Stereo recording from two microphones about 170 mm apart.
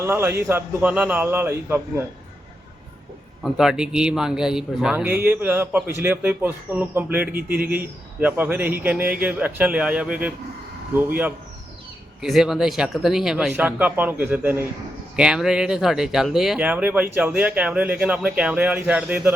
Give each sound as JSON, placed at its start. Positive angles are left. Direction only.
{"t": 0.0, "sound": "speech", "side_deg": -15}
{"t": 3.4, "sound": "speech", "side_deg": -5}
{"t": 7.3, "sound": "speech", "side_deg": -65}
{"t": 7.7, "sound": "speech", "side_deg": -10}
{"t": 12.2, "sound": "speech", "side_deg": -5}